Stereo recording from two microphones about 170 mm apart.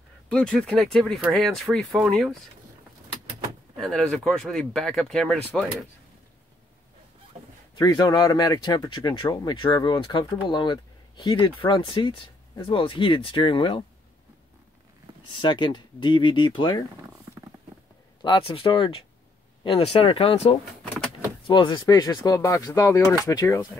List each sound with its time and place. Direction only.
0.3 s speech: 5° left (ahead or behind)
3.7 s speech: centre (ahead or behind)
7.7 s speech: 25° left (ahead or behind)
15.4 s speech: 25° left (ahead or behind)
17.3 s a sound: 20° right (ahead or behind)
18.2 s speech: 30° left (ahead or behind)